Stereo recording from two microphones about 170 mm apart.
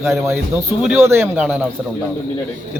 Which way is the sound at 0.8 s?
15° right (ahead or behind).